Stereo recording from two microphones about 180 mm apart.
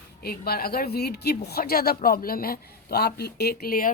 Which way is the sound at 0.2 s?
60° left (ahead or behind).